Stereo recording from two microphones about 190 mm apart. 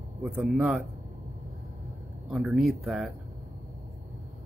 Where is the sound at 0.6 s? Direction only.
5° right (ahead or behind).